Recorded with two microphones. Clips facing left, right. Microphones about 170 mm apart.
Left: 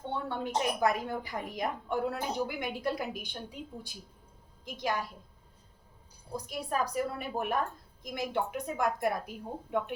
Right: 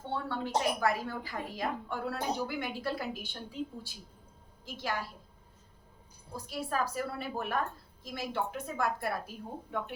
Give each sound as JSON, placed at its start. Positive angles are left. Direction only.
{"t": 0.1, "sound": "a woman's voice", "side_deg": 20}
{"t": 6.3, "sound": "a woman's voice", "side_deg": 15}